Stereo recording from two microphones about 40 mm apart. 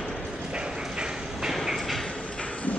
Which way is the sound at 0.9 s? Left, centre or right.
Centre.